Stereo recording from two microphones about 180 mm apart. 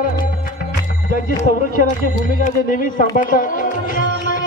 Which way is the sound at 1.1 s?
50° left (ahead or behind).